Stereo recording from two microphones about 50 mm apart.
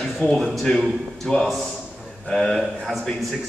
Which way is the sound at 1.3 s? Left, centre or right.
Centre.